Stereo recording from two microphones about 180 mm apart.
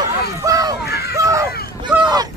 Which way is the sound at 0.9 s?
60° left (ahead or behind).